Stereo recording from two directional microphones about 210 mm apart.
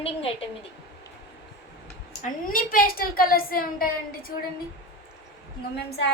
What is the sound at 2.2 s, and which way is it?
A woman's voice, 40° left (ahead or behind).